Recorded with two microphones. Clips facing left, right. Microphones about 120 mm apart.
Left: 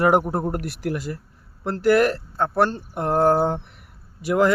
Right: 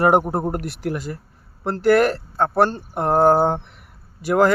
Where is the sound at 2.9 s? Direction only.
35° right (ahead or behind).